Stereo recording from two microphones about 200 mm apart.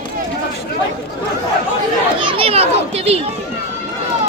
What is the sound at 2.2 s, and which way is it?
A child's voice, 25° right (ahead or behind).